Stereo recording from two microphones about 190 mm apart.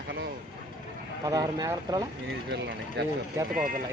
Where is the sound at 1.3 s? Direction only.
20° right (ahead or behind).